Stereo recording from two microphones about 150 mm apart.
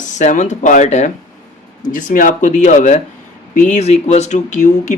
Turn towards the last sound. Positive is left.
turn(degrees=55)  # may be behind; listen again after turning